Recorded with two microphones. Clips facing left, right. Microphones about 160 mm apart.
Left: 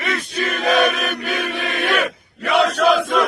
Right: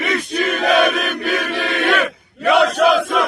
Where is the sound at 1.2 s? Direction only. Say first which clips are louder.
Right 3 dB; 80° right.